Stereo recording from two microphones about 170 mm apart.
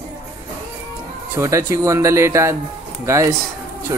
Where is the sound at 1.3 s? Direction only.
15° right (ahead or behind).